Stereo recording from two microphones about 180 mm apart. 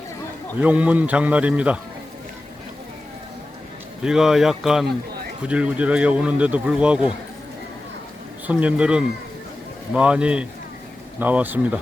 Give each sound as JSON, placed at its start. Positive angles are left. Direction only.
{"t": 0.6, "sound": "speech", "side_deg": -10}
{"t": 4.0, "sound": "speech", "side_deg": -5}
{"t": 8.4, "sound": "speech", "side_deg": -5}